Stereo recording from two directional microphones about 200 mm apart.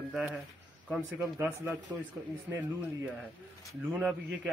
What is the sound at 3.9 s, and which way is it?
Speech, 5° right (ahead or behind).